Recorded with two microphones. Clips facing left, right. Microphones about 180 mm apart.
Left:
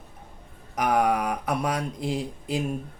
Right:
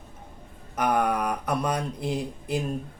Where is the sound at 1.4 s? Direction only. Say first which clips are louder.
Right 1 dB; 80° left.